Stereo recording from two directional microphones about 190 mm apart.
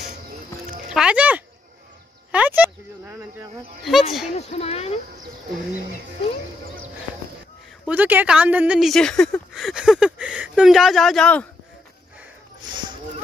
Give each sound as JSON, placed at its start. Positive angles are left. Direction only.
{"t": 0.8, "sound": "speech", "side_deg": -5}
{"t": 3.9, "sound": "a woman's voice", "side_deg": 0}
{"t": 4.4, "sound": "speech", "side_deg": 35}
{"t": 7.8, "sound": "a woman's voice", "side_deg": -10}
{"t": 12.6, "sound": "a sound", "side_deg": -25}